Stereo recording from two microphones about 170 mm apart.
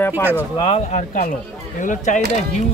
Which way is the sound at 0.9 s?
45° left (ahead or behind).